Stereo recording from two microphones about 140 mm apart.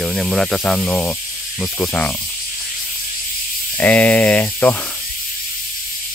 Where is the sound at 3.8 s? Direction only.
10° left (ahead or behind).